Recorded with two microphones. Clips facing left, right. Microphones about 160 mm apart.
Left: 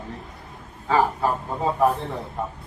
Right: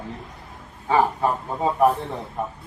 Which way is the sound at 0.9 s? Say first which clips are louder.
Right 1 dB; 20° right (ahead or behind).